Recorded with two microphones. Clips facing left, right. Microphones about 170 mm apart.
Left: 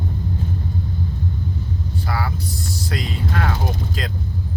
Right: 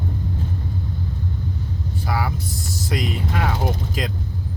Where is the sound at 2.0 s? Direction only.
15° right (ahead or behind).